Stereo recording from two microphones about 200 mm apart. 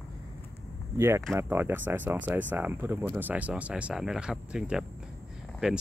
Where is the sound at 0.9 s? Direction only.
15° right (ahead or behind).